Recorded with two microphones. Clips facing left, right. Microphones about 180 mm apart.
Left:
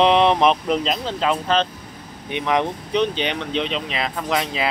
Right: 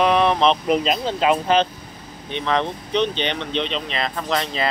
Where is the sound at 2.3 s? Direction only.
15° left (ahead or behind).